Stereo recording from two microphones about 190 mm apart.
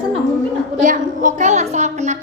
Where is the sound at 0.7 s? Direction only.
40° right (ahead or behind).